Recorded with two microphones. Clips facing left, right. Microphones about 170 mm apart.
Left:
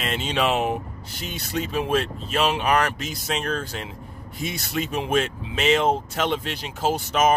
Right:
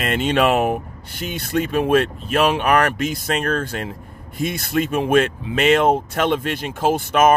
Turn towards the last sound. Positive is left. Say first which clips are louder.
# right 5 dB
turn(degrees=-55)  # may be behind; listen again after turning